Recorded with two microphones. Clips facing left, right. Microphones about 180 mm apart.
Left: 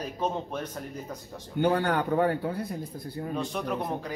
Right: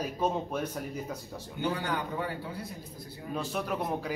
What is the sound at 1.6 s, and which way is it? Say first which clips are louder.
A man's voice: left 7 dB; 60° left (ahead or behind).